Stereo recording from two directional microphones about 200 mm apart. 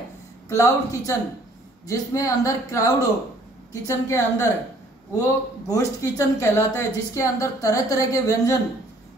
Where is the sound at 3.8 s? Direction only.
15° left (ahead or behind).